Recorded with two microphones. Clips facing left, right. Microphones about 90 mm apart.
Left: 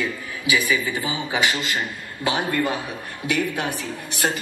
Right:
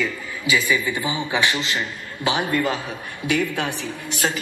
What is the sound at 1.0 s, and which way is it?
Speech, 20° right (ahead or behind).